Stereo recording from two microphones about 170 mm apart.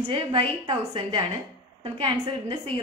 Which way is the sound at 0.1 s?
30° right (ahead or behind).